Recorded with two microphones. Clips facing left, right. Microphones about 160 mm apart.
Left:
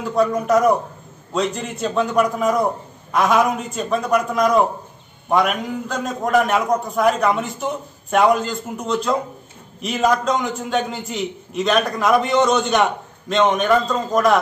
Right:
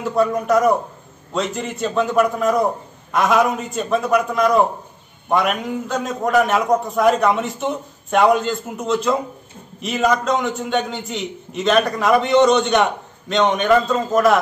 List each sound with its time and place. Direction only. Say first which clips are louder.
0.0 s a man's voice: even; centre (ahead or behind)